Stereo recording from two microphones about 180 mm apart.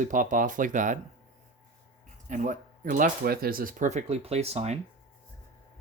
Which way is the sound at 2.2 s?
45° right (ahead or behind).